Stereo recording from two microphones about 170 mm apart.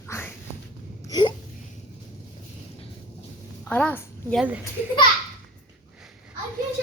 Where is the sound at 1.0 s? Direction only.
25° left (ahead or behind).